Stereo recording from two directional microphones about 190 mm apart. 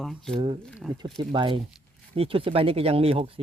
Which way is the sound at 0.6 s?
5° left (ahead or behind).